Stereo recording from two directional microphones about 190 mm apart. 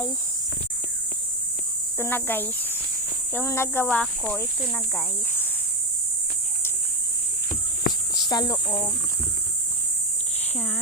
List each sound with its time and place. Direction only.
2.0 s speech: 10° left (ahead or behind)
8.1 s speech: 20° left (ahead or behind)